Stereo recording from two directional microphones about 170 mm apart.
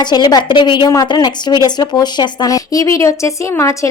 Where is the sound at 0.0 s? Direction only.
25° left (ahead or behind).